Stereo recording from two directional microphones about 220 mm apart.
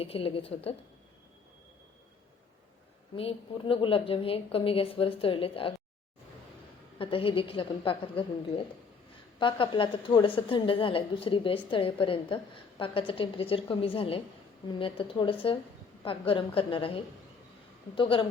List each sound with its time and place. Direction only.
0.0 s a woman's voice: 25° left (ahead or behind)
3.2 s a woman's voice: 25° left (ahead or behind)
7.0 s a woman's voice: 25° left (ahead or behind)